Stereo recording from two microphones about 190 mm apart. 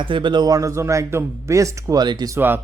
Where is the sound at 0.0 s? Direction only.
25° right (ahead or behind).